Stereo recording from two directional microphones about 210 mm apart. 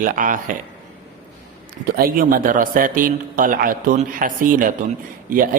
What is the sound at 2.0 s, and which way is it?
A man's voice, 40° right (ahead or behind).